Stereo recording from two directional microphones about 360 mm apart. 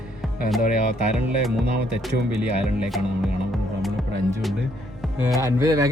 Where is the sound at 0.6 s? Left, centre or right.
Left.